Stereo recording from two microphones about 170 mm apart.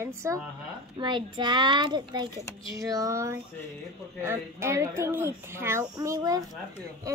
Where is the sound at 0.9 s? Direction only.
25° right (ahead or behind).